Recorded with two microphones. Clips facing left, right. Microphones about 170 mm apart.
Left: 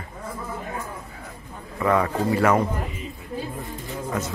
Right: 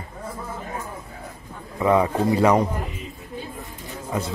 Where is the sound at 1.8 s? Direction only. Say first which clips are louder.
Right 2 dB; 15° right (ahead or behind).